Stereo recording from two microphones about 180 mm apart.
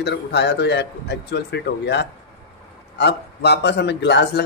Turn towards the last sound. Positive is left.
turn(degrees=70)  # may be behind; listen again after turning